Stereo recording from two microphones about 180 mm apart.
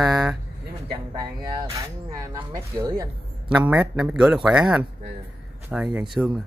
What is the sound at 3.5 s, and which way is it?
Speech, 5° right (ahead or behind).